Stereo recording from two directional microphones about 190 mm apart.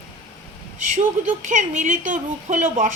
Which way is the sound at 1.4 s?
40° right (ahead or behind).